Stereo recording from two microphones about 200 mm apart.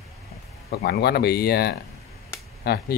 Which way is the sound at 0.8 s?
55° left (ahead or behind).